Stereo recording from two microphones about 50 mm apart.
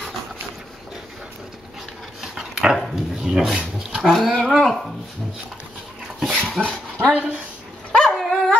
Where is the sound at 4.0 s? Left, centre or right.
Centre.